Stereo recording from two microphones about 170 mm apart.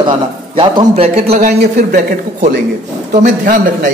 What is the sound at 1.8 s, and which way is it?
A man's voice, 55° right (ahead or behind).